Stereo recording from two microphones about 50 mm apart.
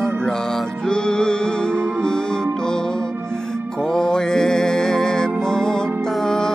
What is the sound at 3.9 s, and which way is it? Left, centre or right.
Music, centre.